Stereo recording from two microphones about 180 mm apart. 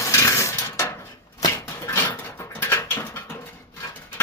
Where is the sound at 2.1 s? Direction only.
15° left (ahead or behind).